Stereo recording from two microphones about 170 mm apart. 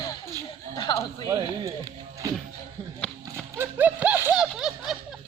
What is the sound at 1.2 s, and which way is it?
Speech, 20° right (ahead or behind).